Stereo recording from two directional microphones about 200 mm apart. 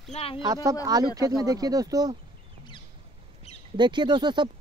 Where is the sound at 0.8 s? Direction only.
20° right (ahead or behind).